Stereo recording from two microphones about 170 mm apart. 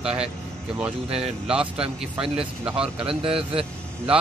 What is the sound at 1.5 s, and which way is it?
Speech, 5° right (ahead or behind).